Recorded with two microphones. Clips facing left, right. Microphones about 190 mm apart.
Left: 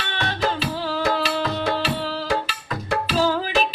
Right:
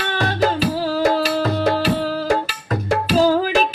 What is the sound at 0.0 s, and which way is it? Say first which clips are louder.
Music: right 6 dB; 45° right (ahead or behind).